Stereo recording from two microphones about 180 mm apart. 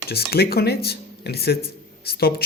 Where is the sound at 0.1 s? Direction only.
60° left (ahead or behind).